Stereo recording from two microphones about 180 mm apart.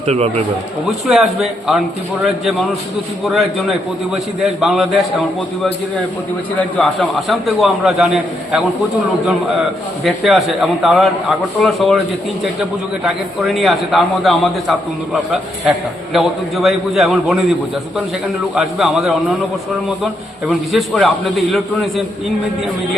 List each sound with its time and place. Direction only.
0.0 s a man's voice: 35° right (ahead or behind)
0.9 s a man's voice: centre (ahead or behind)
6.6 s a man's voice: centre (ahead or behind)
10.0 s a man's voice: centre (ahead or behind)
13.1 s a man's voice: centre (ahead or behind)
18.5 s a man's voice: centre (ahead or behind)
20.5 s a man's voice: centre (ahead or behind)